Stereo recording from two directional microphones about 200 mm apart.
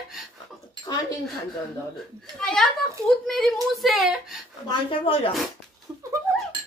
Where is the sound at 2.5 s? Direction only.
5° left (ahead or behind).